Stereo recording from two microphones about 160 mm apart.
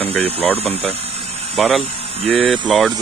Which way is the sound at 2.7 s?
Centre (ahead or behind).